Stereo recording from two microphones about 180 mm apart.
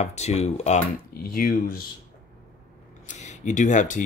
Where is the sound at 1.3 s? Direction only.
55° left (ahead or behind).